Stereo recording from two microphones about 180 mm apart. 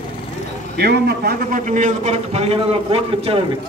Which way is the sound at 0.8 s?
65° right (ahead or behind).